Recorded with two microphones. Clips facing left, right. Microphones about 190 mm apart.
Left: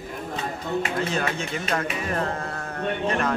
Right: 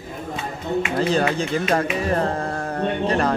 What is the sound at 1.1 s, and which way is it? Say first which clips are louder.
Speech: right 7 dB; 35° right (ahead or behind).